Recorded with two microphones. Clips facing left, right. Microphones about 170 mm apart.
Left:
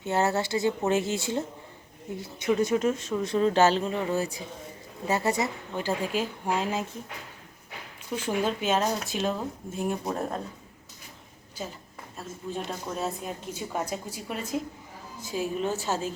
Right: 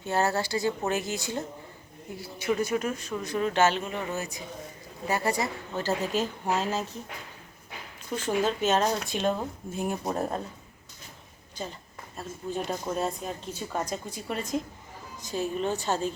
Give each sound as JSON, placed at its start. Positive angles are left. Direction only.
{"t": 0.0, "sound": "a woman's voice", "side_deg": 20}
{"t": 8.1, "sound": "a woman's voice", "side_deg": 10}
{"t": 11.6, "sound": "a woman's voice", "side_deg": 5}